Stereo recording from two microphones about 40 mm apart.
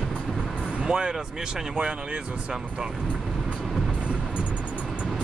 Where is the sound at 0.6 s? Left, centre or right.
Right.